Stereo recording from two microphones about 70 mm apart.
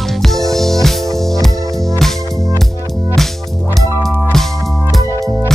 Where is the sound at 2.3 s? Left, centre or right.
Right.